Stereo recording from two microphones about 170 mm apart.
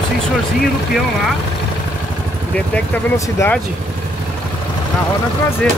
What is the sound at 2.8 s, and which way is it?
Speech, 15° left (ahead or behind).